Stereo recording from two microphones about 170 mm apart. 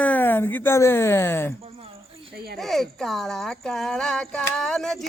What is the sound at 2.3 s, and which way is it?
Speech, 65° right (ahead or behind).